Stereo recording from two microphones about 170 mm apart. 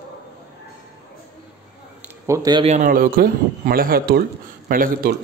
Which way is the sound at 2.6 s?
45° right (ahead or behind).